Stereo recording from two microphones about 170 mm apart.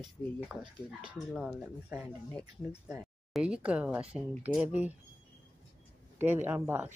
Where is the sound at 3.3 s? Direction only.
5° right (ahead or behind).